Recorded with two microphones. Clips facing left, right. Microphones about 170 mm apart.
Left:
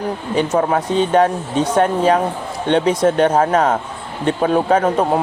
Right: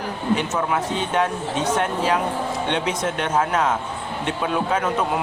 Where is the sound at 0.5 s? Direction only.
35° left (ahead or behind).